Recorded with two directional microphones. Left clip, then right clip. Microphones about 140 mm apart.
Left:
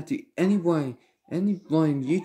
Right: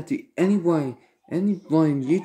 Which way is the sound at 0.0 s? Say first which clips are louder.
Right 3 dB; 25° left (ahead or behind).